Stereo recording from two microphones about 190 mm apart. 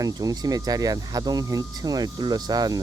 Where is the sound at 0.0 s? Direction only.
20° right (ahead or behind).